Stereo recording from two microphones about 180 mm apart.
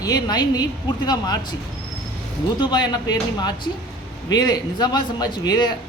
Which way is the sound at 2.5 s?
25° left (ahead or behind).